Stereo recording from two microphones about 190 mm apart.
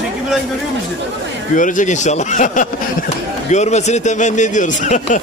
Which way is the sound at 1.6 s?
40° left (ahead or behind).